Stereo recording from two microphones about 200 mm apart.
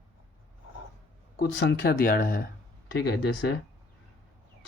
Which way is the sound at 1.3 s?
55° left (ahead or behind).